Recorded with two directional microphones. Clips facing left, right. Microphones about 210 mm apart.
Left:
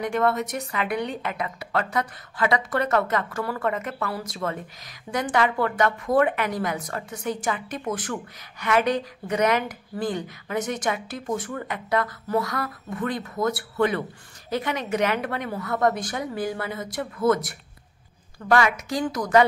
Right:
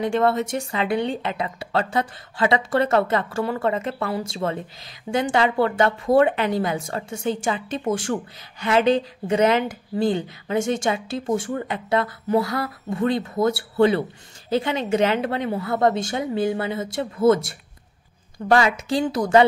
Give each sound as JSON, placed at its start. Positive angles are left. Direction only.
{"t": 0.0, "sound": "a woman's voice", "side_deg": -30}